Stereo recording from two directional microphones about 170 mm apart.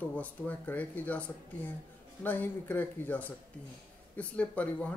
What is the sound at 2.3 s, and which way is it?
Speech, 10° left (ahead or behind).